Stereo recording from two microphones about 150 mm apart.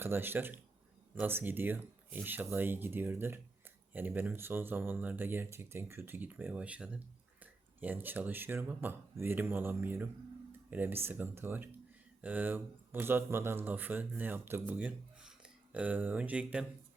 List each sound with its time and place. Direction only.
0.0 s speech: 15° right (ahead or behind)